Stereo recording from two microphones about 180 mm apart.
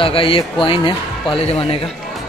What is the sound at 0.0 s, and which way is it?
Speech, 30° left (ahead or behind).